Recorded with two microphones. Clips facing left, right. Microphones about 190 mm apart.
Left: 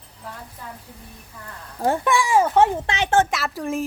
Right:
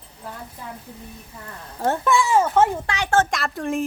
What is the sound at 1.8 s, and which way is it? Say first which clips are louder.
Speech: even; 15° left (ahead or behind).